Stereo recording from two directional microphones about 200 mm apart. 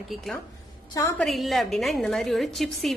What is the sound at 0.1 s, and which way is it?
A woman's voice, centre (ahead or behind).